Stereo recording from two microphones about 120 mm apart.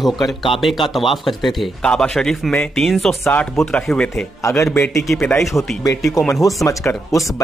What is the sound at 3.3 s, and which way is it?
Speech, 15° left (ahead or behind).